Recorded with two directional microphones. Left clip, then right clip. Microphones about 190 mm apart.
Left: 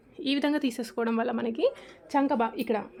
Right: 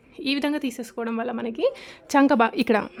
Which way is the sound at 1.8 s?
30° right (ahead or behind).